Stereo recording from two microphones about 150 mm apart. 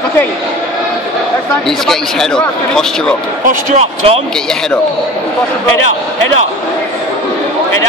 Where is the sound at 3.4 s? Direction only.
50° right (ahead or behind).